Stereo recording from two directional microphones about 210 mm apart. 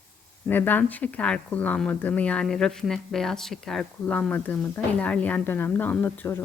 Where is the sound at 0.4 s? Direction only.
10° left (ahead or behind).